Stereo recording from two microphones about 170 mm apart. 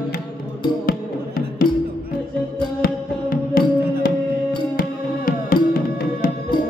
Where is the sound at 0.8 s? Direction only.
60° left (ahead or behind).